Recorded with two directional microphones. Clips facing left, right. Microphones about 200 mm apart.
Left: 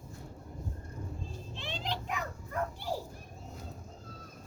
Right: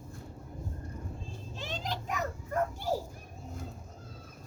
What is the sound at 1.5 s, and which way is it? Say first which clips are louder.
Children playing: right 1 dB; 40° right (ahead or behind).